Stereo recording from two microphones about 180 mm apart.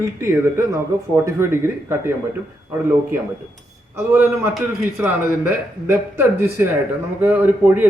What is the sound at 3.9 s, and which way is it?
Speech, 15° right (ahead or behind).